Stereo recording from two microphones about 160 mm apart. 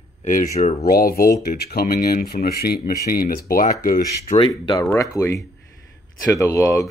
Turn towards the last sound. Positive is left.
turn(degrees=20)  # may be behind; listen again after turning